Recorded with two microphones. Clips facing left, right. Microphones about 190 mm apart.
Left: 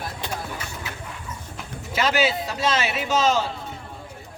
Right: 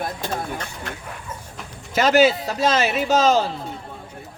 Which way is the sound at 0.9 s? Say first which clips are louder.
Right 3 dB; 5° left (ahead or behind).